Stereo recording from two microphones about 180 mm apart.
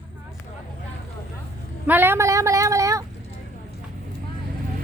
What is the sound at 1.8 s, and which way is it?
A woman's voice, 10° right (ahead or behind).